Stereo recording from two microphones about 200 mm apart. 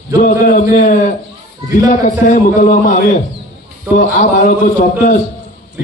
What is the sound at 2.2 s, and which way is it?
Speech, 40° left (ahead or behind).